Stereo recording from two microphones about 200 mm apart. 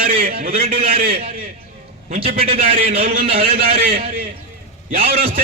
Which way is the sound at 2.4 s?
30° right (ahead or behind).